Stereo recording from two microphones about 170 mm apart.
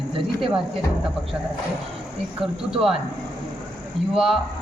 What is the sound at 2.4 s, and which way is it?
Speech, centre (ahead or behind).